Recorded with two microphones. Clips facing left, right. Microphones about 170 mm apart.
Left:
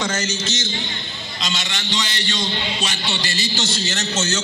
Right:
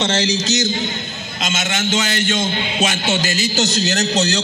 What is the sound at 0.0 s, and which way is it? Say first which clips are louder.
A man's voice: right 5 dB; 30° right (ahead or behind).